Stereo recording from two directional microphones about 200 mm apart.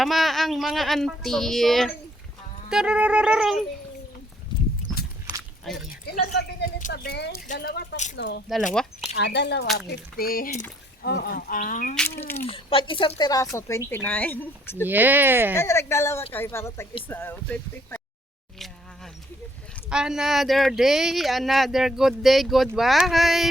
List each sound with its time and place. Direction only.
0.0 s speech: centre (ahead or behind)
5.6 s speech: 5° right (ahead or behind)
6.1 s speech: 45° left (ahead or behind)
7.4 s speech: 40° left (ahead or behind)
8.1 s a woman's voice: 55° left (ahead or behind)
8.7 s speech: 5° left (ahead or behind)
9.1 s a woman's voice: 60° left (ahead or behind); by 11.9 s 40° left (ahead or behind)
11.9 s speech: 10° left (ahead or behind)
12.5 s speech: 25° left (ahead or behind); by 14.8 s 10° left (ahead or behind)
14.8 s speech: 10° right (ahead or behind)
15.5 s speech: 15° left (ahead or behind)
19.9 s speech: 5° right (ahead or behind)